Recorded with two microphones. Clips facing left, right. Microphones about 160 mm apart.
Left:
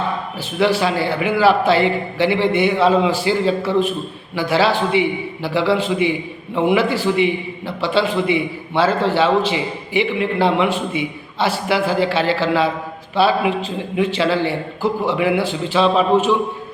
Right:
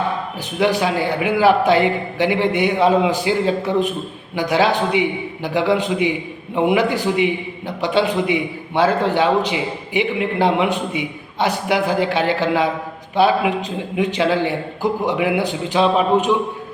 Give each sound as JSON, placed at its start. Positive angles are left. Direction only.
{"t": 0.6, "sound": "a man's voice", "side_deg": -15}